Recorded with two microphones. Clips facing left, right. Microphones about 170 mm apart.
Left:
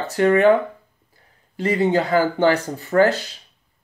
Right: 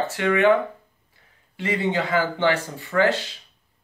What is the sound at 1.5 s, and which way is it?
Speech, 40° left (ahead or behind).